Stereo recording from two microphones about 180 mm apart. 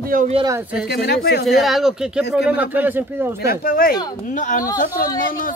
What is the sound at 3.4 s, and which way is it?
A woman's voice, 55° left (ahead or behind).